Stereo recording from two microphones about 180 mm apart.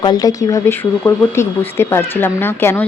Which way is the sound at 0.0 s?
20° left (ahead or behind).